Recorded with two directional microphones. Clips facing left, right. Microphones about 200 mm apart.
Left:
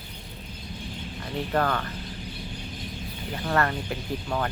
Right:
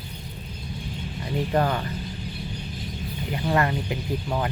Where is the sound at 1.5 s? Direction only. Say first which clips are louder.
Right 1 dB; 15° right (ahead or behind).